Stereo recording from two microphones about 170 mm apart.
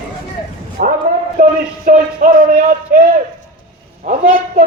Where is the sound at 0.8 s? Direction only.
65° right (ahead or behind).